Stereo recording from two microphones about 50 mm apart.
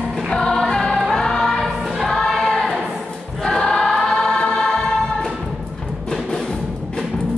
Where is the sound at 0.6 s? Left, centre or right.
Centre.